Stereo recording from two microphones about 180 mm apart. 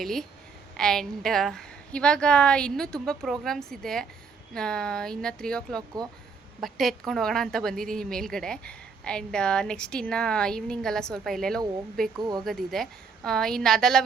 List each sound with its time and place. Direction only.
0.0 s a woman's voice: centre (ahead or behind)
12.1 s speech: 20° right (ahead or behind)
12.5 s a woman's voice: centre (ahead or behind)